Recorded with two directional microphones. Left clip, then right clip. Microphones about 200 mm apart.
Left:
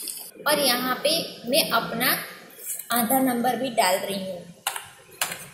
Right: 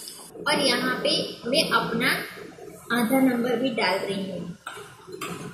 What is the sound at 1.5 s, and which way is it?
Speech, 40° left (ahead or behind).